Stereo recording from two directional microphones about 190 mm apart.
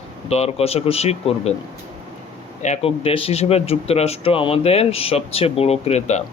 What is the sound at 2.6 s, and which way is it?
Speech, 30° left (ahead or behind).